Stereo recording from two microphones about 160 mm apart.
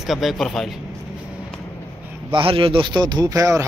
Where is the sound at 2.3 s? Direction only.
35° right (ahead or behind).